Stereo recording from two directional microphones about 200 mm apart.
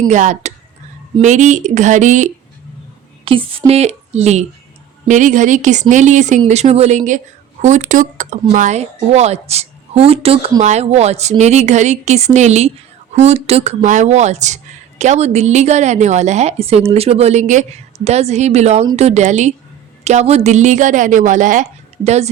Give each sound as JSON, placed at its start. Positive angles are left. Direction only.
{"t": 0.1, "sound": "a woman's voice", "side_deg": -35}
{"t": 3.2, "sound": "a woman's voice", "side_deg": -25}